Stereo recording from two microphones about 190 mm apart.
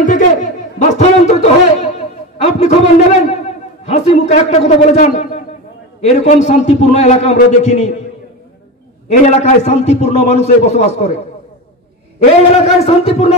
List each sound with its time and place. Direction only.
0.0 s a sound: 40° left (ahead or behind)
3.8 s a man's voice: 35° left (ahead or behind)
9.1 s a man's voice: 35° left (ahead or behind)
12.5 s a man's voice: 35° left (ahead or behind)